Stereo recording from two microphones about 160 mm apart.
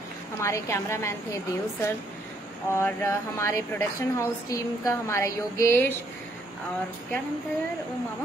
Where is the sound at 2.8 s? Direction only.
15° left (ahead or behind).